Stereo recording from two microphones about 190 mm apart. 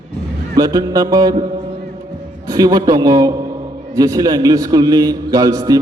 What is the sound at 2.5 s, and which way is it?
A man's voice, 20° right (ahead or behind).